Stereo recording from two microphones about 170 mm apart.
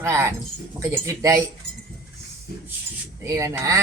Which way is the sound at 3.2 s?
15° right (ahead or behind).